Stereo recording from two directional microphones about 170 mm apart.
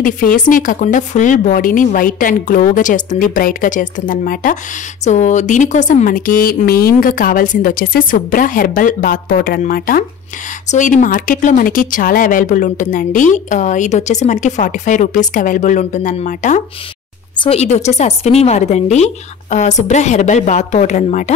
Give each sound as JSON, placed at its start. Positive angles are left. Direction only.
{"t": 0.0, "sound": "speech", "side_deg": 55}
{"t": 10.7, "sound": "speech", "side_deg": 50}